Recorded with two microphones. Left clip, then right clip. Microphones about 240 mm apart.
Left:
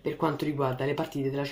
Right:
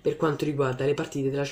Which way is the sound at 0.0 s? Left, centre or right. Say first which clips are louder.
Right 3 dB; centre.